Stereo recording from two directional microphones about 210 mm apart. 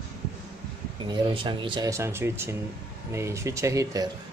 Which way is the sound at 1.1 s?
25° right (ahead or behind).